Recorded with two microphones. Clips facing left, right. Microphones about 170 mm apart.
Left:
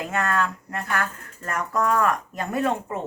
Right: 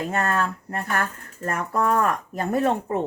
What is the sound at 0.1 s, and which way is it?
Speech, 40° right (ahead or behind).